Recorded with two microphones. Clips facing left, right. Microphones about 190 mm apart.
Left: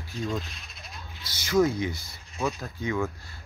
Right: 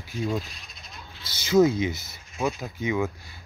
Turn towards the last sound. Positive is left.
turn(degrees=-15)  # may be behind; listen again after turning